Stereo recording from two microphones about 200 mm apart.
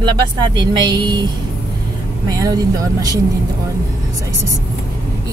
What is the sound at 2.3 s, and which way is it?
Speech, 20° right (ahead or behind).